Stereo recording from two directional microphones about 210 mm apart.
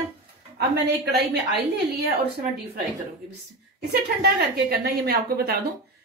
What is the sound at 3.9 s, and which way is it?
Speech, 50° right (ahead or behind).